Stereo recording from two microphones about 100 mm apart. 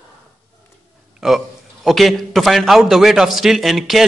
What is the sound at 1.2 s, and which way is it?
A man's voice, centre (ahead or behind).